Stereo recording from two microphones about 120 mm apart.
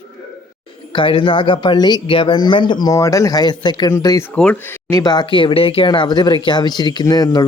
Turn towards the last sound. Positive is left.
turn(degrees=35)  # may be behind; listen again after turning